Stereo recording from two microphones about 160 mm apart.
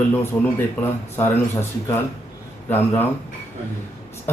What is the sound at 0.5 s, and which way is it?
A man's voice, 15° left (ahead or behind).